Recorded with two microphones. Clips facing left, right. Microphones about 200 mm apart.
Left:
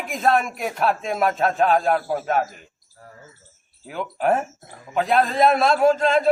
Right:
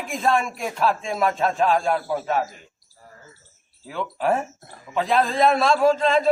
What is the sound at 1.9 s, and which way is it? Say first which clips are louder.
Speech: left 2 dB; 40° left (ahead or behind).